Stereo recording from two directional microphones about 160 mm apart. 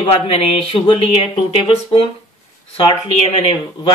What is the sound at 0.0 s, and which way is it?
Speech, 40° left (ahead or behind).